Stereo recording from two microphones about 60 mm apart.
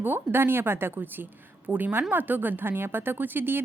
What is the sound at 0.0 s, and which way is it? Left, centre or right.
A woman's voice, right.